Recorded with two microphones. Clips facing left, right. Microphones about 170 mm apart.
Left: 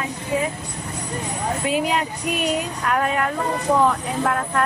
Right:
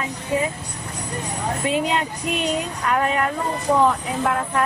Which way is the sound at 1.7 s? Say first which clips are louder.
Even; 5° left (ahead or behind).